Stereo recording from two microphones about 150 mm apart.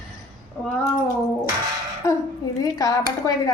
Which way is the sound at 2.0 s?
20° left (ahead or behind).